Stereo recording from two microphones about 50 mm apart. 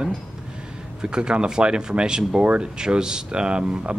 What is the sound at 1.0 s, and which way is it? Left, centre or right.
Speech, centre.